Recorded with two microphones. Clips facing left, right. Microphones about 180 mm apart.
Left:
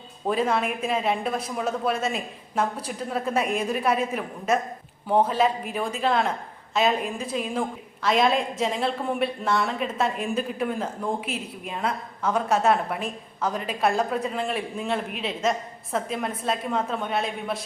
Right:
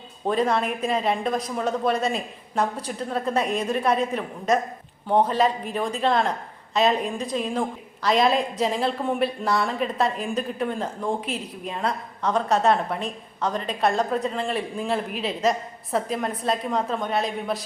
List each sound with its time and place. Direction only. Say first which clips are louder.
0.3 s a woman's voice: right 1 dB; 5° left (ahead or behind)